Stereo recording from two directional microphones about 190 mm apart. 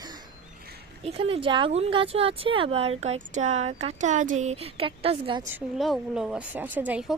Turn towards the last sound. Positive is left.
turn(degrees=-5)  # may be behind; listen again after turning